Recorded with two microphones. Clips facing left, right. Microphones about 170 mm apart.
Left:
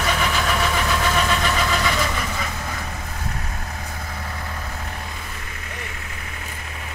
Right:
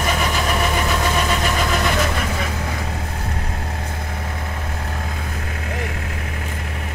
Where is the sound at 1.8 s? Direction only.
50° right (ahead or behind).